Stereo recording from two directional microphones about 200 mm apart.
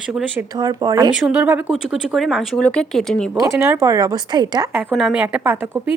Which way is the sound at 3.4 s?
15° right (ahead or behind).